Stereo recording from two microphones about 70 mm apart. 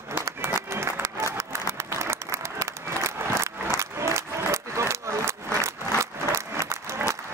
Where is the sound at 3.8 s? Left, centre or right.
Right.